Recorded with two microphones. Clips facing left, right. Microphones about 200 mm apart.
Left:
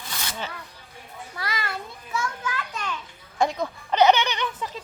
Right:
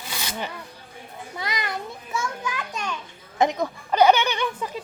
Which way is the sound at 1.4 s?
20° right (ahead or behind).